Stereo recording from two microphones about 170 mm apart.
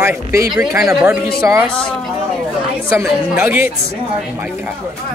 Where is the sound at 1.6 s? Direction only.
5° left (ahead or behind).